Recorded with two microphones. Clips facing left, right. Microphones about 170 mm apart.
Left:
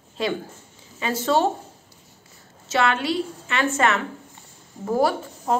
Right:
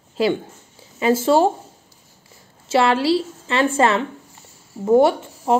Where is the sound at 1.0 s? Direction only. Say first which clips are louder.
Right 6 dB; 25° right (ahead or behind).